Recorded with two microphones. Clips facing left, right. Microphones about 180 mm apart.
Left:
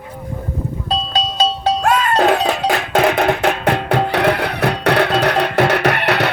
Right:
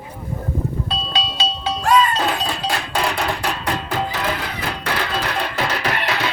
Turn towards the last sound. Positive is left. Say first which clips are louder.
# left 6 dB
turn(degrees=65)  # may be behind; listen again after turning